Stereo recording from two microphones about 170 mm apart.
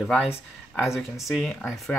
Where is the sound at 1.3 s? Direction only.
5° left (ahead or behind).